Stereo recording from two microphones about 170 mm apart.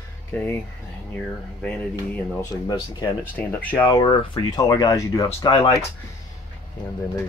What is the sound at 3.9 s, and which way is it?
Speech, 30° left (ahead or behind).